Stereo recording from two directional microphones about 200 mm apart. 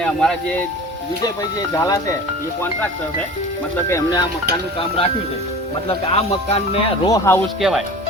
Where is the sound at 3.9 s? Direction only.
15° left (ahead or behind).